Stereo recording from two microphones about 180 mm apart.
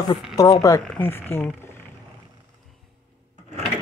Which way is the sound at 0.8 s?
5° left (ahead or behind).